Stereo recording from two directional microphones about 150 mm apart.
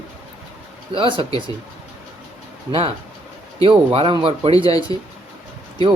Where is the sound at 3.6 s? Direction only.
35° right (ahead or behind).